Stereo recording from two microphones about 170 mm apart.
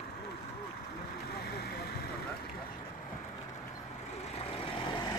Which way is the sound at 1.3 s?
70° left (ahead or behind).